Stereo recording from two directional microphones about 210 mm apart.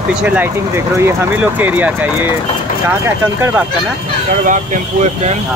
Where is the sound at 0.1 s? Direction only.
5° right (ahead or behind).